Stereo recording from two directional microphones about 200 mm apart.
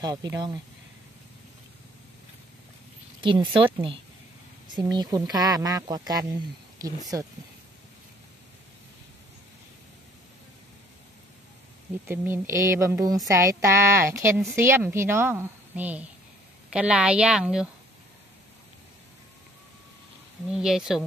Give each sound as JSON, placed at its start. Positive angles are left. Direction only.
{"t": 0.0, "sound": "speech", "side_deg": -20}
{"t": 3.2, "sound": "speech", "side_deg": -25}
{"t": 12.1, "sound": "a woman's voice", "side_deg": -10}
{"t": 20.4, "sound": "a woman's voice", "side_deg": -5}